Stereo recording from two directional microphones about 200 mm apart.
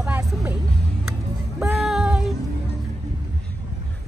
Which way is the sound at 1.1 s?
5° right (ahead or behind).